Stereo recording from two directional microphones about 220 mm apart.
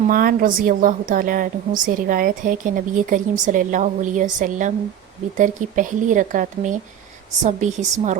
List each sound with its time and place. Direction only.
0.1 s a woman's voice: 40° right (ahead or behind)